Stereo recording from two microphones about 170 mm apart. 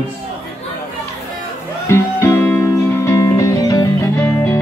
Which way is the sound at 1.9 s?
15° left (ahead or behind).